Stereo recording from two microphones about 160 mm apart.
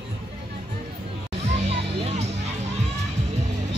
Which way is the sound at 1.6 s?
40° right (ahead or behind).